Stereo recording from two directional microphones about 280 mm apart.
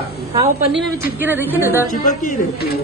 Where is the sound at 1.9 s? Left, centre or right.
Left.